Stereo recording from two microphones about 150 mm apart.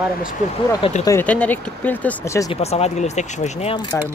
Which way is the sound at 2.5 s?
45° left (ahead or behind).